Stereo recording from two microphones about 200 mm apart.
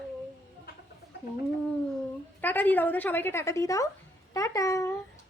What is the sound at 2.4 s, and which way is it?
Speech, 10° left (ahead or behind).